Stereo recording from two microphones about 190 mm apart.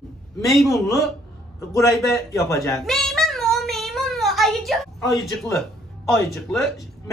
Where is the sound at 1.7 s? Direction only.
15° left (ahead or behind).